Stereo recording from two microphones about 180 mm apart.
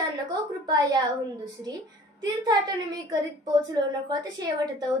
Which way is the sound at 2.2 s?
20° right (ahead or behind).